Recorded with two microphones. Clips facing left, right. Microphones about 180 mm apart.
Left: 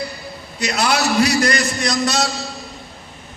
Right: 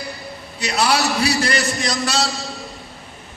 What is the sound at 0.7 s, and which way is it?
A man's voice, 30° right (ahead or behind).